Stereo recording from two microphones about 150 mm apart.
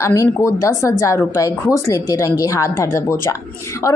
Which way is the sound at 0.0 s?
20° left (ahead or behind).